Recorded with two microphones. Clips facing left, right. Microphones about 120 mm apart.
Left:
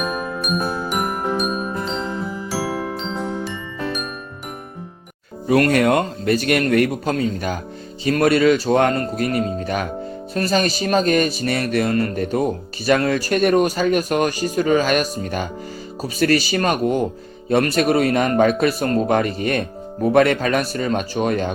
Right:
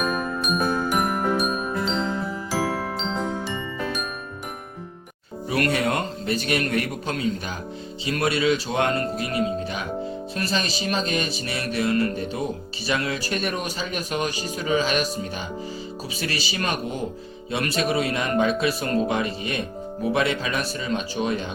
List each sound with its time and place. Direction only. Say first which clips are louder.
0.0 s jingle: left 1 dB; centre (ahead or behind)
2.5 s music: left 1 dB; 10° left (ahead or behind)
5.5 s speech: left 8 dB; 45° left (ahead or behind)
6.3 s speech: left 7 dB; 45° left (ahead or behind)